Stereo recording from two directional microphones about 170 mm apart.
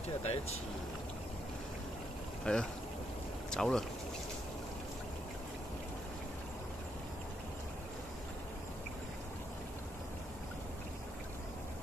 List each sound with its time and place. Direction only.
0.2 s speech: 40° left (ahead or behind)
2.5 s speech: 5° left (ahead or behind)